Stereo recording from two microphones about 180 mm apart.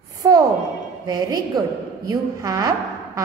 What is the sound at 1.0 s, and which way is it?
A woman's voice, 20° right (ahead or behind).